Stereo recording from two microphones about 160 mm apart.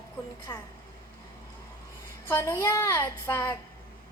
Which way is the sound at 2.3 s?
15° left (ahead or behind).